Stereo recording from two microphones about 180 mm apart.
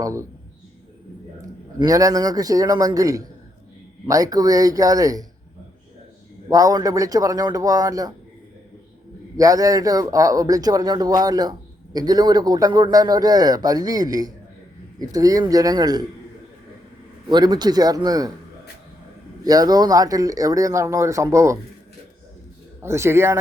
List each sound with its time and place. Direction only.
0.0 s speech: 15° right (ahead or behind)
1.4 s a man's voice: 20° right (ahead or behind)
6.5 s a man's voice: 20° right (ahead or behind)
9.4 s a man's voice: 20° right (ahead or behind)
17.2 s a man's voice: 25° right (ahead or behind)
19.5 s a man's voice: 20° right (ahead or behind)
22.8 s speech: 15° right (ahead or behind)